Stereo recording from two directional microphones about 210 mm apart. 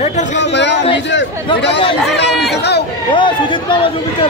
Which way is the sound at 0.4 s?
55° left (ahead or behind).